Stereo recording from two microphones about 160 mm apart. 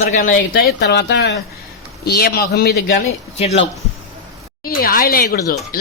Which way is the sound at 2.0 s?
75° left (ahead or behind).